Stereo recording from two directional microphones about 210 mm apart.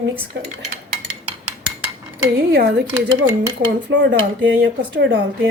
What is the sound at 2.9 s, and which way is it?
Speech, 10° right (ahead or behind).